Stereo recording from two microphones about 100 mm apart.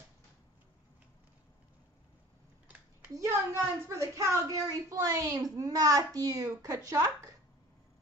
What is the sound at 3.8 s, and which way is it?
A woman's voice, 30° right (ahead or behind).